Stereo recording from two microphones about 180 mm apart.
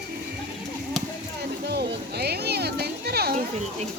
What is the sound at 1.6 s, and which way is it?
Music, 60° right (ahead or behind).